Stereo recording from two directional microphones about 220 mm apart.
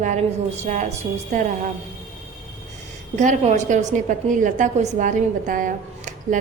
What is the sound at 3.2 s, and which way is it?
A woman's voice, 35° right (ahead or behind).